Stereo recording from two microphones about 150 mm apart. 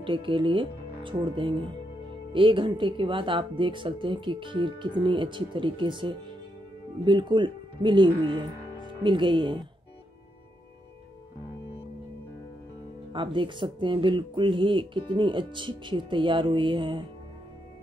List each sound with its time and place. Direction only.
0.0 s speech: 35° right (ahead or behind)
13.1 s speech: 35° right (ahead or behind)